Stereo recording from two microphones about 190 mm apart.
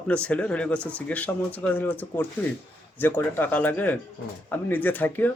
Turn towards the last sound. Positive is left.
turn(degrees=10)  # may be behind; listen again after turning